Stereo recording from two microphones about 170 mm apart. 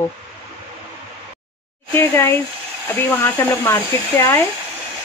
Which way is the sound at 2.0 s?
15° left (ahead or behind).